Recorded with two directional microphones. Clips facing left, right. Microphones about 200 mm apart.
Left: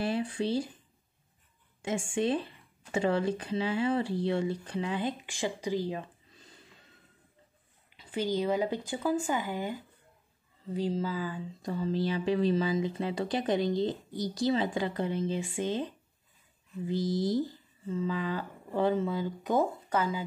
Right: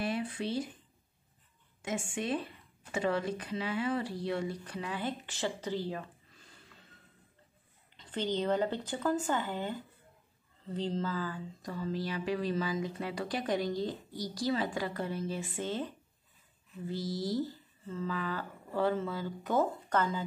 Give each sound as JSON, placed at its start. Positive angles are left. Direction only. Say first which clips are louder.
{"t": 0.0, "sound": "speech", "louder": "left 4 dB", "side_deg": 30}
{"t": 1.8, "sound": "speech", "louder": "left 5 dB", "side_deg": 30}
{"t": 7.9, "sound": "speech", "louder": "left 3 dB", "side_deg": 10}
{"t": 11.6, "sound": "speech", "louder": "left 6 dB", "side_deg": 25}